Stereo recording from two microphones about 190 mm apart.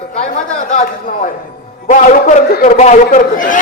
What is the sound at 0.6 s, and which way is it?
A man's voice, 40° left (ahead or behind).